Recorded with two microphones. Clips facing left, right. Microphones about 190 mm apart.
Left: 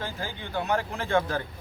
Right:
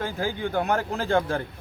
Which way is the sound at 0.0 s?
50° right (ahead or behind).